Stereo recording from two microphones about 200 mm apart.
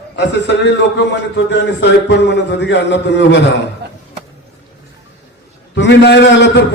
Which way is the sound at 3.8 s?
55° right (ahead or behind).